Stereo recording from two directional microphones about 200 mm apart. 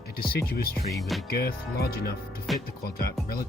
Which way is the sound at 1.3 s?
50° left (ahead or behind).